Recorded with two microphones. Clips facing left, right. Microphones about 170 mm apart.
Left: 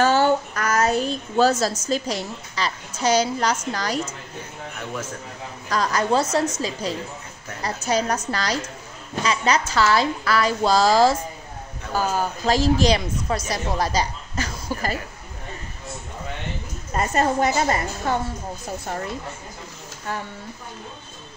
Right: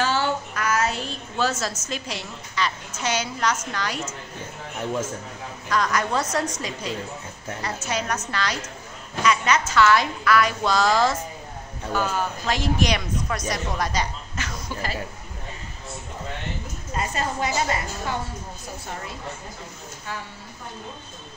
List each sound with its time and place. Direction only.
0.0 s a sound: 45° left (ahead or behind)
3.7 s a woman's voice: 35° left (ahead or behind)
5.7 s a woman's voice: 35° left (ahead or behind)
16.9 s a woman's voice: 50° left (ahead or behind)
20.1 s speech: 55° left (ahead or behind)